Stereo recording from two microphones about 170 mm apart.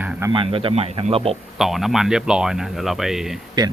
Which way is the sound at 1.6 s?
Centre (ahead or behind).